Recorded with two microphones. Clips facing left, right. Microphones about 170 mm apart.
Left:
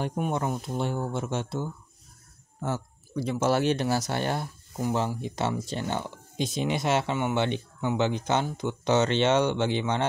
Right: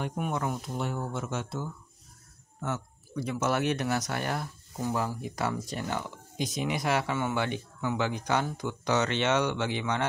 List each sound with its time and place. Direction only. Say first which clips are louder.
0.0 s speech: left 3 dB; 30° left (ahead or behind)